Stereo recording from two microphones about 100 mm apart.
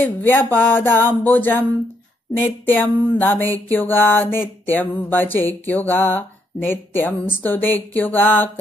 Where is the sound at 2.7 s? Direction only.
20° left (ahead or behind).